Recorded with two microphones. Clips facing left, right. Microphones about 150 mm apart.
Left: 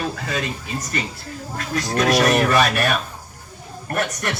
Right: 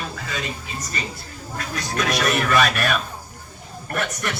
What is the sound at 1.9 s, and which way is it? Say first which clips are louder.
Speech: left 5 dB; 40° left (ahead or behind).